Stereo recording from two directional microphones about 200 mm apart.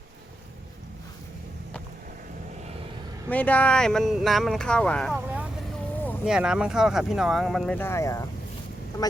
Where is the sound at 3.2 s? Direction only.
10° left (ahead or behind).